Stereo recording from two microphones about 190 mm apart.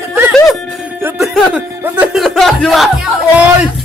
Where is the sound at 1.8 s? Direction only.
5° right (ahead or behind).